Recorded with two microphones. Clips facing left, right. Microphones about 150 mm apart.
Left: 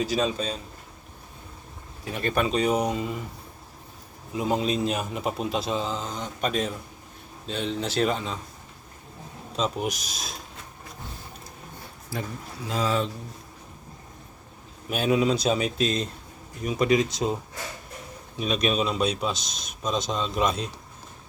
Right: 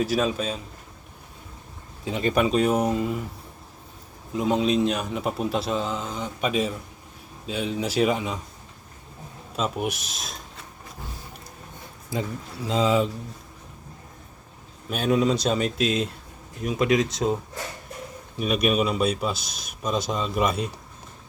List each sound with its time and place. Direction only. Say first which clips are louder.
0.0 s a man's voice: right 2 dB; 5° right (ahead or behind)
2.0 s speech: right 3 dB; 15° right (ahead or behind)
2.5 s a man's voice: right 2 dB; 5° right (ahead or behind)
4.3 s a man's voice: right 3 dB; centre (ahead or behind)
9.6 s a man's voice: right 1 dB; 5° right (ahead or behind)
12.6 s speech: right 4 dB; 20° right (ahead or behind)
14.8 s a man's voice: right 1 dB; centre (ahead or behind)
18.3 s speech: right 2 dB; 5° right (ahead or behind)